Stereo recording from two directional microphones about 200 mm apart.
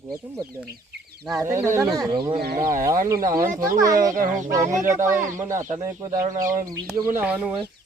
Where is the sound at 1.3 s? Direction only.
15° right (ahead or behind).